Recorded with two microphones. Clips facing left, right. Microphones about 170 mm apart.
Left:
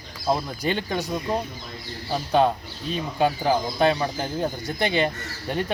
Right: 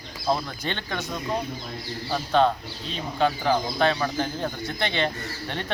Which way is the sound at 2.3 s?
15° left (ahead or behind).